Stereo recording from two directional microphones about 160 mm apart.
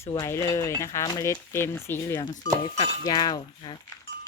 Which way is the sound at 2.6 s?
30° left (ahead or behind).